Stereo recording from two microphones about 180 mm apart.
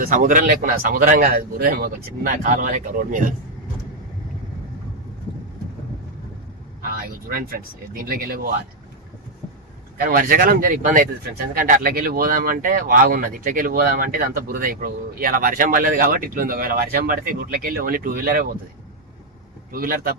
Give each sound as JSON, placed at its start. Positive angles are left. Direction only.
{"t": 0.1, "sound": "speech", "side_deg": -50}
{"t": 6.8, "sound": "a sound", "side_deg": -55}
{"t": 10.0, "sound": "speech", "side_deg": -50}
{"t": 19.7, "sound": "speech", "side_deg": -50}